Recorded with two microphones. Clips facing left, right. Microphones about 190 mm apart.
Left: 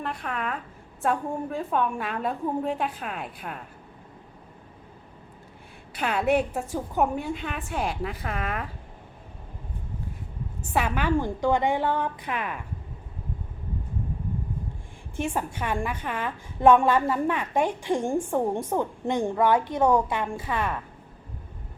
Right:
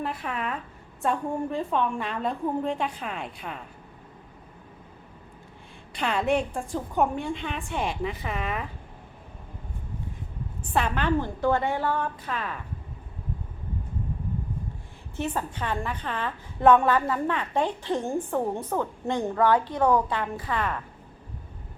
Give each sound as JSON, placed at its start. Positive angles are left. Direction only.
{"t": 0.0, "sound": "a woman's voice", "side_deg": -5}
{"t": 5.9, "sound": "a woman's voice", "side_deg": 5}
{"t": 10.6, "sound": "a woman's voice", "side_deg": 5}
{"t": 15.1, "sound": "a woman's voice", "side_deg": 10}